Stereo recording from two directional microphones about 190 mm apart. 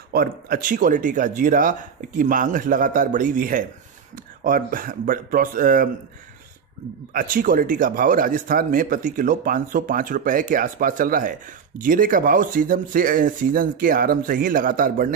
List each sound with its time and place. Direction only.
0.1 s speech: 50° right (ahead or behind)
7.2 s speech: 45° right (ahead or behind)